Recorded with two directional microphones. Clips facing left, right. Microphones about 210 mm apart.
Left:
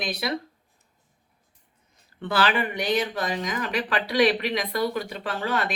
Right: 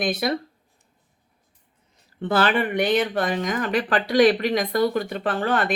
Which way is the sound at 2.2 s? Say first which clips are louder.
Right 3 dB; 45° right (ahead or behind).